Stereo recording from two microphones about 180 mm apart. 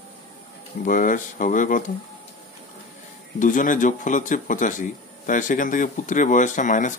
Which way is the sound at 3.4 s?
45° left (ahead or behind).